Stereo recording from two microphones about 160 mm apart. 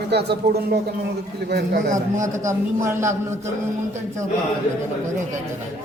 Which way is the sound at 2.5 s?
15° right (ahead or behind).